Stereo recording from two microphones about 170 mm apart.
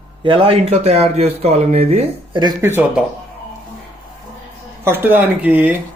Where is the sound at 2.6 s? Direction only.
15° right (ahead or behind).